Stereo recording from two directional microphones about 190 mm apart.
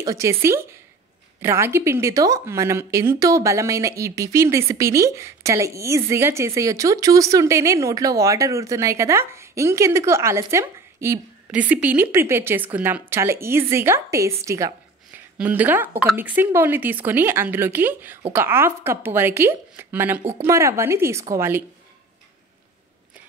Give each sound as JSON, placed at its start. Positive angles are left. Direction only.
{"t": 0.0, "sound": "speech", "side_deg": -15}